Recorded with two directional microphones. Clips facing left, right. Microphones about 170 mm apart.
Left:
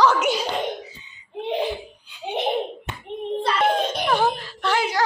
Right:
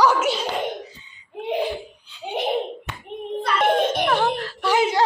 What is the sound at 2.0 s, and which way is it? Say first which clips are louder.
Giggle: left 1 dB; 15° left (ahead or behind).